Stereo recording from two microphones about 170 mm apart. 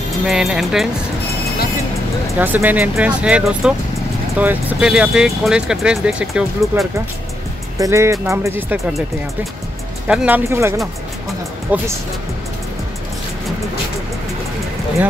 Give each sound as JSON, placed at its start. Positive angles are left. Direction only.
{"t": 0.3, "sound": "speech", "side_deg": 0}
{"t": 2.3, "sound": "speech", "side_deg": -10}
{"t": 7.8, "sound": "speech", "side_deg": -15}
{"t": 10.0, "sound": "speech", "side_deg": -5}
{"t": 11.7, "sound": "speech", "side_deg": -10}